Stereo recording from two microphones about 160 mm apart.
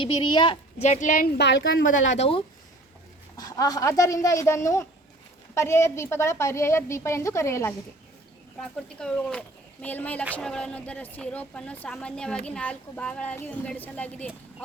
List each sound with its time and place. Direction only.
0.0 s a woman's voice: 30° left (ahead or behind)
0.9 s a woman's voice: 50° left (ahead or behind); by 1.8 s 80° left
2.1 s a woman's voice: 40° left (ahead or behind)
3.3 s a woman's voice: 25° left (ahead or behind)
8.6 s a woman's voice: 5° left (ahead or behind)